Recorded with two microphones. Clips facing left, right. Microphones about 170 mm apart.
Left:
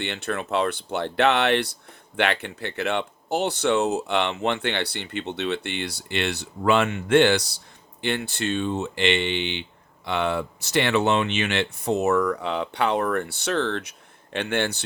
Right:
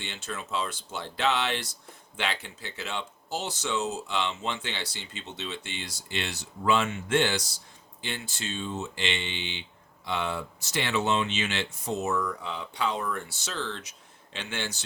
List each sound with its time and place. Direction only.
0.0 s speech: 65° left (ahead or behind)